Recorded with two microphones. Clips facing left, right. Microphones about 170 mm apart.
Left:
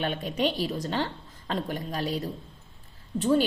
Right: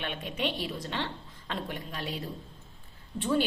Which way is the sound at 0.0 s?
40° left (ahead or behind).